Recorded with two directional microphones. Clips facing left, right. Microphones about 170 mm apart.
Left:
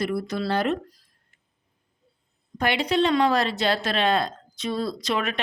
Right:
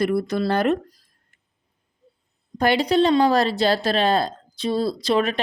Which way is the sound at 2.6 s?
35° right (ahead or behind).